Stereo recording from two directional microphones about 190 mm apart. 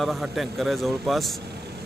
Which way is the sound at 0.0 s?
Centre (ahead or behind).